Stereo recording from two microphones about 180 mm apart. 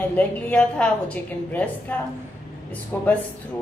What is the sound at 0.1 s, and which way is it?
A woman's voice, 10° left (ahead or behind).